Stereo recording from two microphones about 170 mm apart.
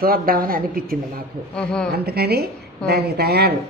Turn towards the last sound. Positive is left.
turn(degrees=-70)  # may be behind; listen again after turning